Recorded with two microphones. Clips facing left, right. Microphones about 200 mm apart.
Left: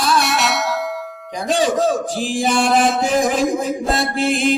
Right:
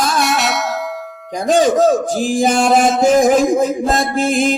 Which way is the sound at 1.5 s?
45° right (ahead or behind).